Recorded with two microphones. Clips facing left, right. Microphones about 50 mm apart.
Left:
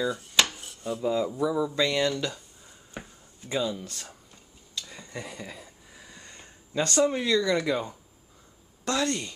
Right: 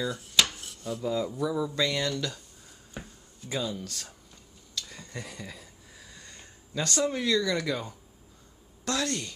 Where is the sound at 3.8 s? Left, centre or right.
Left.